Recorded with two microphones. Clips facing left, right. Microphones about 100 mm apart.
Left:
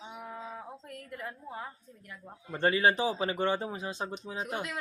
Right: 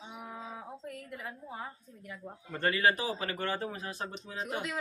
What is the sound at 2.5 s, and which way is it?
Speech, 25° left (ahead or behind).